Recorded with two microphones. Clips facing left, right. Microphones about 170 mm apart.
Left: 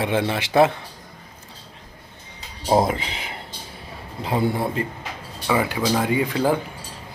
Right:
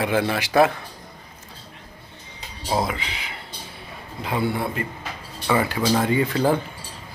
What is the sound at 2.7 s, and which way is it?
Speech, 45° left (ahead or behind).